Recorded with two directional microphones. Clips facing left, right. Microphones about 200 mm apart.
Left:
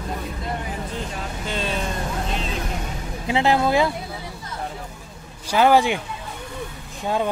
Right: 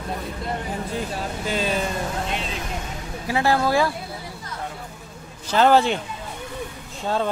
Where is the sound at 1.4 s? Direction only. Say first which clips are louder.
Right 3 dB; 5° right (ahead or behind).